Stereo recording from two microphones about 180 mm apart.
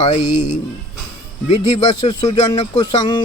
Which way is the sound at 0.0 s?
35° left (ahead or behind).